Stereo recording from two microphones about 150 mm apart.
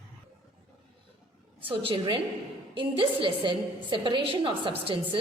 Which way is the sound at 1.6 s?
35° right (ahead or behind).